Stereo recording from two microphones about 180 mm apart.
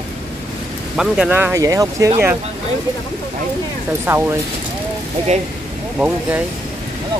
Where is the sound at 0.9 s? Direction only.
5° right (ahead or behind).